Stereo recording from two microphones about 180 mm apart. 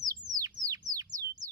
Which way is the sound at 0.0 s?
20° right (ahead or behind).